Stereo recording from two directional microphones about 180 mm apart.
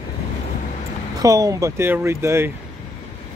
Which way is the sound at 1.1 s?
20° right (ahead or behind).